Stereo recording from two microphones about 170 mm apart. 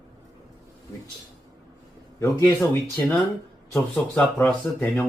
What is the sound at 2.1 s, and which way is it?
Speech, 15° left (ahead or behind).